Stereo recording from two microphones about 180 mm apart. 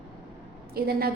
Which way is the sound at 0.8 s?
60° right (ahead or behind).